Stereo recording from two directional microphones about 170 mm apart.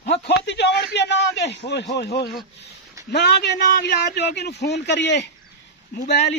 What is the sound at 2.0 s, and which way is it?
A man's voice, 80° left.